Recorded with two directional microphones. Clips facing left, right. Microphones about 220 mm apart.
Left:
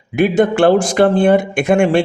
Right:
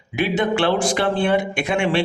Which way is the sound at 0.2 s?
50° left (ahead or behind).